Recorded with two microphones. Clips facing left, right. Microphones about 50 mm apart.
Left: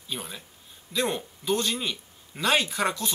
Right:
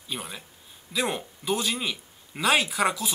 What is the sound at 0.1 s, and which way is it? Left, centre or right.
Speech, centre.